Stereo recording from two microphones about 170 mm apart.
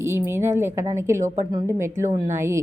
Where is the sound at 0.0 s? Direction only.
15° right (ahead or behind).